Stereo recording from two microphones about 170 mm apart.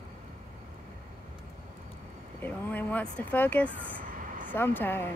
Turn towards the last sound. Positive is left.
turn(degrees=10)  # may be behind; listen again after turning